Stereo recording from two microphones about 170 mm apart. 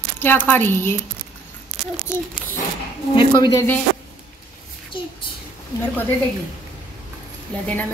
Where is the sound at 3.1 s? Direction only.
25° left (ahead or behind).